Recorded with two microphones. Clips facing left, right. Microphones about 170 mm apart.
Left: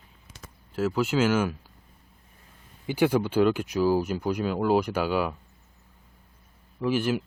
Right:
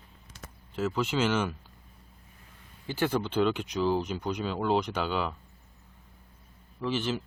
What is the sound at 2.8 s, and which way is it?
Speech, 10° left (ahead or behind).